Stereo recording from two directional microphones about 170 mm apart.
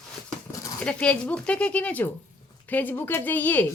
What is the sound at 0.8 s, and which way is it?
Speech, 5° left (ahead or behind).